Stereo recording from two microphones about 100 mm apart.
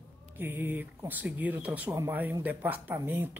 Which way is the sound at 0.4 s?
20° right (ahead or behind).